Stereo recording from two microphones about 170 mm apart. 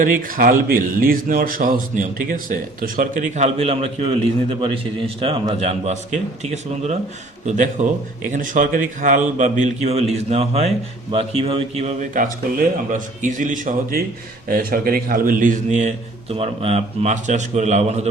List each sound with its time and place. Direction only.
0.0 s speech: 55° right (ahead or behind)